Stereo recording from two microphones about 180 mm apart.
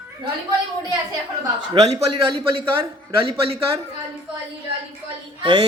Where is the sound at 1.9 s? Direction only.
25° right (ahead or behind).